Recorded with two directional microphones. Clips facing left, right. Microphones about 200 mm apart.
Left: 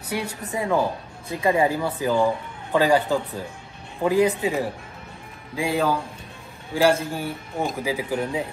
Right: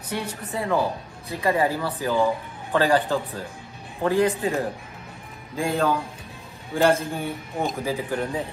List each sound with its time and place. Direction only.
0.1 s a man's voice: 10° left (ahead or behind)